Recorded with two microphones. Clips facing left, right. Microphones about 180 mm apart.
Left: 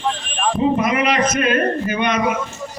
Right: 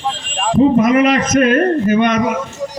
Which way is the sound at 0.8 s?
45° right (ahead or behind).